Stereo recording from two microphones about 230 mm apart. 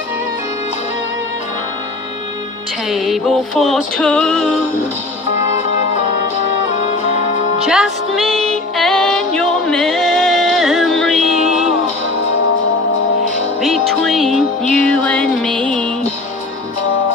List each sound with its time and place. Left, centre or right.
2.9 s music: centre
7.6 s music: centre
11.3 s a sound: right
13.6 s music: centre